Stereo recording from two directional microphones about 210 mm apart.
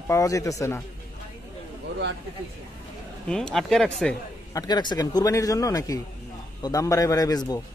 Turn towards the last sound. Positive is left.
turn(degrees=20)  # may be behind; listen again after turning